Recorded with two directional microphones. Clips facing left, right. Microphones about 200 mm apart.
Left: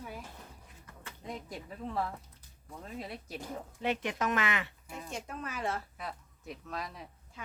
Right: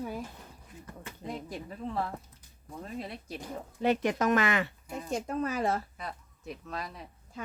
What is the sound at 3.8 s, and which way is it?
A woman's voice, 40° right (ahead or behind).